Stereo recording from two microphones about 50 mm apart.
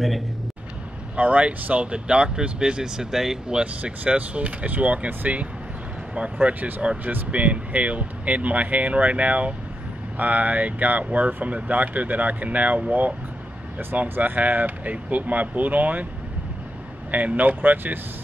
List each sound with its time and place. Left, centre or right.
1.1 s speech: right; by 3.6 s centre
3.8 s speech: right
14.0 s speech: right
17.1 s speech: right